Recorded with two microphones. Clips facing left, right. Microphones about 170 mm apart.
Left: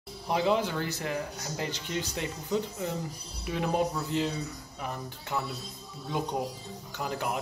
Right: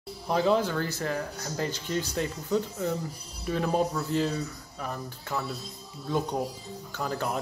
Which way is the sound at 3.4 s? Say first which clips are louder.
Right 2 dB; 15° left (ahead or behind).